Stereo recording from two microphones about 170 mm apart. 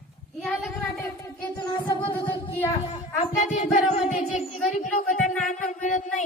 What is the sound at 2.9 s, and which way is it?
Music, 40° left (ahead or behind).